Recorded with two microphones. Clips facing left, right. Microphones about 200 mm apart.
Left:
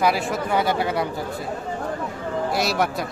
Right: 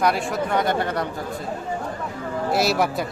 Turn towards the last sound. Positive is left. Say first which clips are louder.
# right 2 dB
turn(degrees=0)  # may be behind; listen again after turning